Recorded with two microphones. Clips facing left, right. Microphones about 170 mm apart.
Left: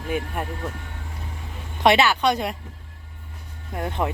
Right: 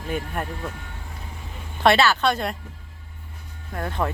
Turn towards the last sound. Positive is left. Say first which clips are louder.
# left 1 dB
turn(degrees=15)  # may be behind; listen again after turning